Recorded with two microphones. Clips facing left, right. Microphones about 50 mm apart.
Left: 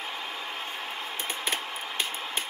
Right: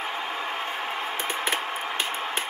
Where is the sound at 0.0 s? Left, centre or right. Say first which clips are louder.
Right 6 dB; right.